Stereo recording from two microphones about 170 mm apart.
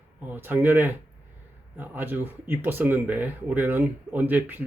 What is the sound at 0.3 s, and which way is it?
Speech, 10° right (ahead or behind).